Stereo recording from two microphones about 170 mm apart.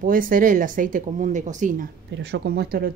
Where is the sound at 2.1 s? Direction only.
85° right; by 2.9 s 60° right (ahead or behind).